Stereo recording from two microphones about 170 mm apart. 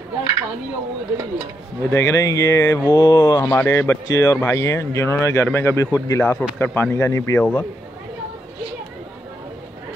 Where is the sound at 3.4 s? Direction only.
15° left (ahead or behind).